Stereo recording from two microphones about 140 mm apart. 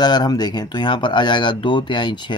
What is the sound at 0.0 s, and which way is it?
Speech, 30° left (ahead or behind).